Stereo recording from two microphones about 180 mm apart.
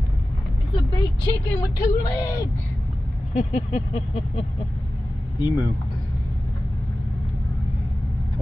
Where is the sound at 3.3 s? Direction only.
40° left (ahead or behind).